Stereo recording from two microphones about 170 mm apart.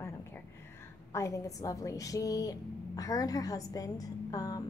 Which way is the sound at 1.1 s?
20° left (ahead or behind).